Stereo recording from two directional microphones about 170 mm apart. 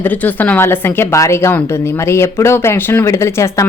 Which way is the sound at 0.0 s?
10° left (ahead or behind).